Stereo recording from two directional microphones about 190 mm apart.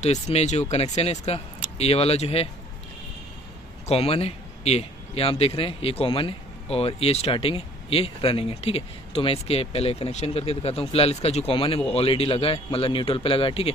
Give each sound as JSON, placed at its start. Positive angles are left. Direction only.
{"t": 0.0, "sound": "speech", "side_deg": 35}
{"t": 3.8, "sound": "a man's voice", "side_deg": 30}